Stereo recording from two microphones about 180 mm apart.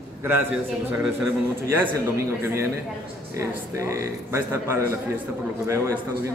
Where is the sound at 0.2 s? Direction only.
10° right (ahead or behind).